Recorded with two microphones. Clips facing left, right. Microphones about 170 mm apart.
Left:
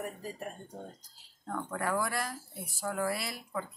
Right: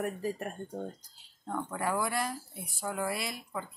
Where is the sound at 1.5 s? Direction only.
5° right (ahead or behind).